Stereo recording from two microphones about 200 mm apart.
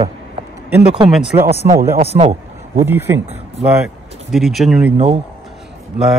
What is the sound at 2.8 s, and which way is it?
Speech, 10° right (ahead or behind).